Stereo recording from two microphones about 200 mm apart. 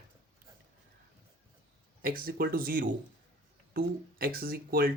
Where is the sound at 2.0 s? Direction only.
45° right (ahead or behind).